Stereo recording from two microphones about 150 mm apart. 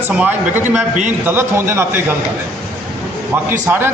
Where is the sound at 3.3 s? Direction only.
10° right (ahead or behind).